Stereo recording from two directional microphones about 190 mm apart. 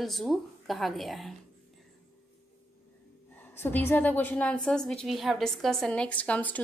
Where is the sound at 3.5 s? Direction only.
10° left (ahead or behind).